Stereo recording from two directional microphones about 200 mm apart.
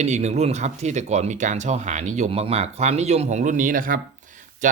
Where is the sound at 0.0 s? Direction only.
35° right (ahead or behind).